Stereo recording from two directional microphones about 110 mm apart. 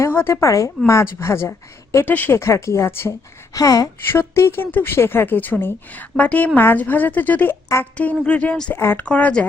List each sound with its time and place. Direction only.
0.0 s a woman's voice: 20° left (ahead or behind)
3.5 s speech: 35° left (ahead or behind)
4.1 s a woman's voice: 20° left (ahead or behind)